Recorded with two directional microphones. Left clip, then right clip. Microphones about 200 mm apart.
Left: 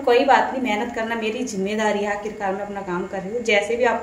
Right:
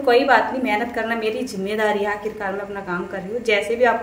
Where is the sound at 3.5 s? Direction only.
15° right (ahead or behind).